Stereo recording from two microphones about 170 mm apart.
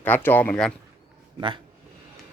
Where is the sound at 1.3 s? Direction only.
30° right (ahead or behind).